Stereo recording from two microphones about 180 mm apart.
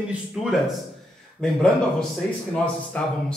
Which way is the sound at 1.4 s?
5° left (ahead or behind).